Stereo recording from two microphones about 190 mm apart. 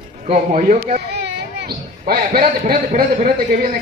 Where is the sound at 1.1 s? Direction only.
60° right (ahead or behind).